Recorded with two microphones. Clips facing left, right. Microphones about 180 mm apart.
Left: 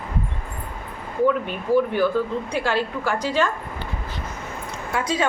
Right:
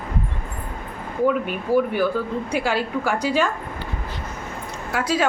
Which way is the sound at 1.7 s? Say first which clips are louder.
Left 1 dB; 10° right (ahead or behind).